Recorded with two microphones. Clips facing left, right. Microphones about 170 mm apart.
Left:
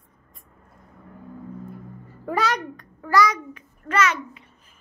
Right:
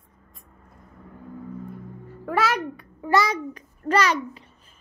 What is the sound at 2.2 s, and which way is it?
Speech, 5° right (ahead or behind).